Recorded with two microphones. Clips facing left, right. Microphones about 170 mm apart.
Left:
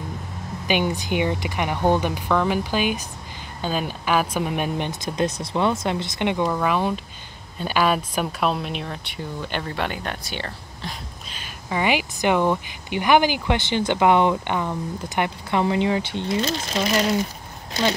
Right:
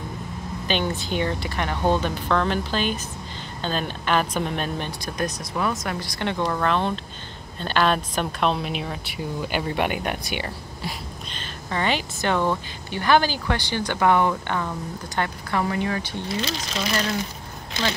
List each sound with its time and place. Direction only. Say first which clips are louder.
0.7 s speech: left 3 dB; 10° left (ahead or behind); by 11.0 s 10° right (ahead or behind)
11.3 s speech: left 2 dB; 10° left (ahead or behind)
16.3 s speech: left 4 dB; 45° left (ahead or behind)